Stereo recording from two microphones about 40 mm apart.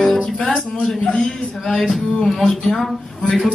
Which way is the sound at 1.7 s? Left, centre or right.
Centre.